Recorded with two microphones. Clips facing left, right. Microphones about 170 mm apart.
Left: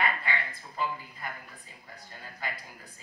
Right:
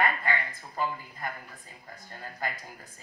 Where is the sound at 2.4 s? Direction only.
45° right (ahead or behind).